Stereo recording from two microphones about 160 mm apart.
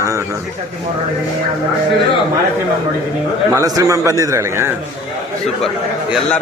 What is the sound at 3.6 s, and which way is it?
A man's voice, 20° right (ahead or behind).